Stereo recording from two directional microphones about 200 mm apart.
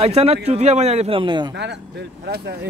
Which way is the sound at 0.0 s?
30° right (ahead or behind).